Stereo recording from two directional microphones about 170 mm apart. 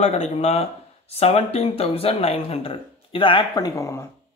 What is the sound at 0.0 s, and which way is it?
Speech, 40° left (ahead or behind).